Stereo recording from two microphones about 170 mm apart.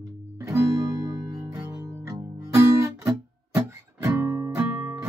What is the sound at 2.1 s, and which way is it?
Guitar, 15° right (ahead or behind).